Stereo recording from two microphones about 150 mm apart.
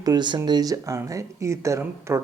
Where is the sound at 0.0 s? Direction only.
30° right (ahead or behind).